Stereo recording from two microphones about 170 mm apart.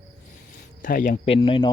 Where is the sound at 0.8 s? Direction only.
55° left (ahead or behind); by 1.7 s 30° left (ahead or behind).